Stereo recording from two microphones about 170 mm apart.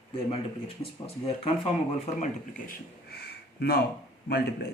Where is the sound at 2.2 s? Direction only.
50° left (ahead or behind).